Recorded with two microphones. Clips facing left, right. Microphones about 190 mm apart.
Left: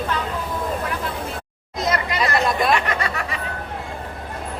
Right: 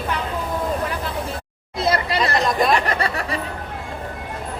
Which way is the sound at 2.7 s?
35° right (ahead or behind).